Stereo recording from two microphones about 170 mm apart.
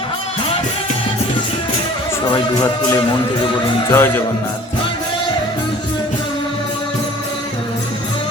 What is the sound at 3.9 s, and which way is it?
Speech, 15° left (ahead or behind).